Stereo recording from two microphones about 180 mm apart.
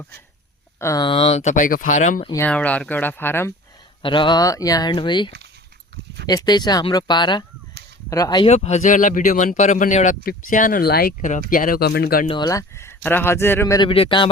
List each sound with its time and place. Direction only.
0.8 s speech: 15° left (ahead or behind)
1.0 s speech: 30° left (ahead or behind)
2.4 s speech: 10° left (ahead or behind)
4.0 s speech: 25° left (ahead or behind)
8.4 s speech: 40° left (ahead or behind); by 11.1 s 60° left (ahead or behind)
11.2 s speech: 45° left (ahead or behind)
12.3 s speech: 20° left (ahead or behind)
13.8 s speech: 30° left (ahead or behind)